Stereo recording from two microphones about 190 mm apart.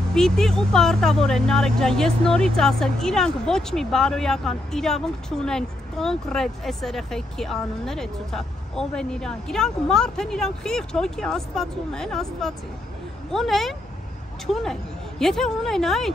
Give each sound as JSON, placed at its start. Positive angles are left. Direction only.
{"t": 0.1, "sound": "speech", "side_deg": 0}